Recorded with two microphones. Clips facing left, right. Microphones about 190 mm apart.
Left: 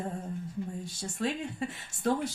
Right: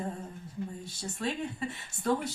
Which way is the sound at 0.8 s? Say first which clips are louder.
Left 4 dB; 45° left (ahead or behind).